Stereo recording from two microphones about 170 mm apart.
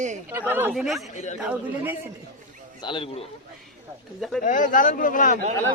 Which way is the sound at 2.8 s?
30° left (ahead or behind).